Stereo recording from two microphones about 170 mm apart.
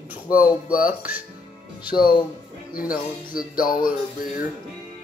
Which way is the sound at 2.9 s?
55° left (ahead or behind).